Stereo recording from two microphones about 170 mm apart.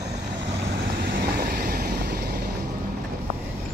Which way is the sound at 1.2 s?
65° right (ahead or behind).